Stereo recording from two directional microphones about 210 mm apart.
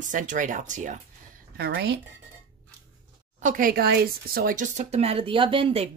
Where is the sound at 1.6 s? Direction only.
50° right (ahead or behind).